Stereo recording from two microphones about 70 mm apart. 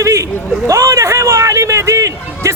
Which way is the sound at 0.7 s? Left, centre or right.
Right.